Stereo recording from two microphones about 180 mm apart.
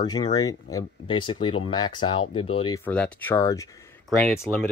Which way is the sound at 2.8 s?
10° left (ahead or behind).